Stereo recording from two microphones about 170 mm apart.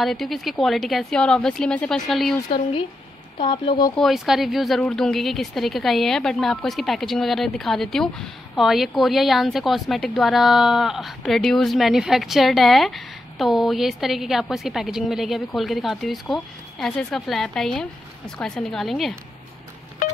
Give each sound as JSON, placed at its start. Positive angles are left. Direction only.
{"t": 0.0, "sound": "speech", "side_deg": 0}
{"t": 3.3, "sound": "speech", "side_deg": 30}
{"t": 3.9, "sound": "speech", "side_deg": 0}